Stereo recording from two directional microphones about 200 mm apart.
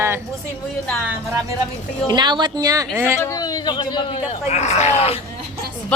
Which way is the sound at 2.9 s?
15° right (ahead or behind).